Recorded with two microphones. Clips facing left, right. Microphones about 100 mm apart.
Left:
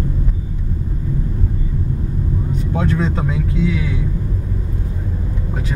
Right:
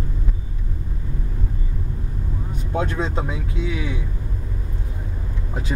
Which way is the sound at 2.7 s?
25° right (ahead or behind).